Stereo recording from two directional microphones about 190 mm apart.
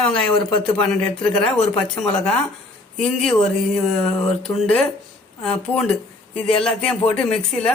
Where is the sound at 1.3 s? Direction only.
30° left (ahead or behind).